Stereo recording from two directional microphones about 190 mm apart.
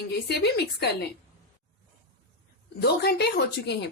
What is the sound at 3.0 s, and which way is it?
Speech, 60° left (ahead or behind).